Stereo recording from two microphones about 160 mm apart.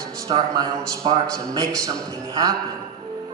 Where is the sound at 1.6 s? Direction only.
20° right (ahead or behind).